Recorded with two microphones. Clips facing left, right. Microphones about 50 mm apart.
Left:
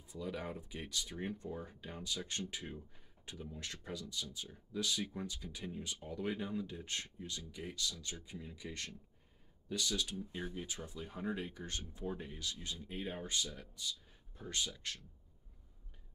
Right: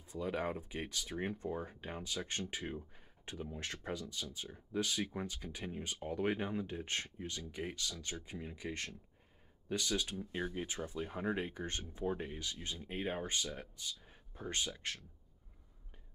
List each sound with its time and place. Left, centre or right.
0.0 s speech: right